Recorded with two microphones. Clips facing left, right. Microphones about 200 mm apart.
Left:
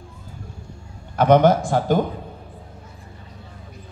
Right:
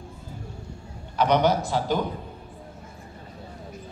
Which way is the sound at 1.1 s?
50° left (ahead or behind).